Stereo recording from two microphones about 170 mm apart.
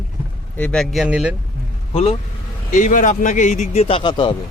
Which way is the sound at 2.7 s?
50° left (ahead or behind).